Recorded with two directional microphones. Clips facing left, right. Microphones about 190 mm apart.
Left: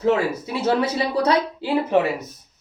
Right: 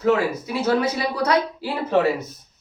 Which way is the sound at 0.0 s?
25° left (ahead or behind).